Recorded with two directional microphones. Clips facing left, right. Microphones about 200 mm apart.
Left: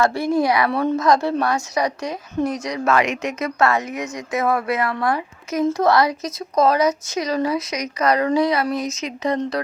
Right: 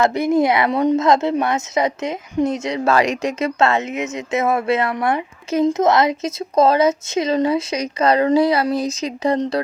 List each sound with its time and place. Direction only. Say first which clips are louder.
0.0 s a woman's voice: right 3 dB; 20° right (ahead or behind)